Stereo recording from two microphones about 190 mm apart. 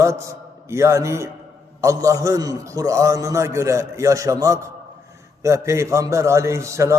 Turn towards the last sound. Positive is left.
turn(degrees=-15)  # may be behind; listen again after turning